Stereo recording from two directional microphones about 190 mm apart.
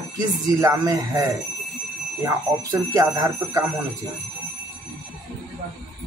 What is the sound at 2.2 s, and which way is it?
Speech, 20° right (ahead or behind).